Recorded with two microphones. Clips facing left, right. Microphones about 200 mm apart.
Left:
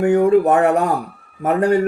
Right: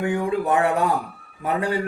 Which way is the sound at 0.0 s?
45° left (ahead or behind).